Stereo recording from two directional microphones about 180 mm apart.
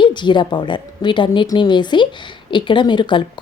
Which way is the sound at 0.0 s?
25° left (ahead or behind).